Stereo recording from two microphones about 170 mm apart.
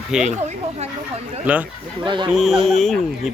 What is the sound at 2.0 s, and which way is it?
Speech, 30° right (ahead or behind).